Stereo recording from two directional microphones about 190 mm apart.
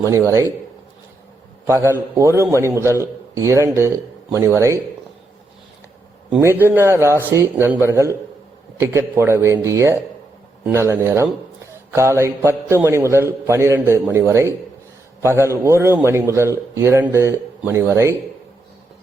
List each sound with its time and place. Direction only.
0.0 s a man's voice: 15° right (ahead or behind)
1.6 s a man's voice: 15° right (ahead or behind)
6.3 s a man's voice: 10° right (ahead or behind)